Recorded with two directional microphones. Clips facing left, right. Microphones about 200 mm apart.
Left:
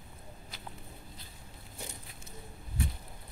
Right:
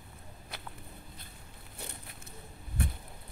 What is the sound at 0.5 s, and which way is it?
Walk, 60° right (ahead or behind).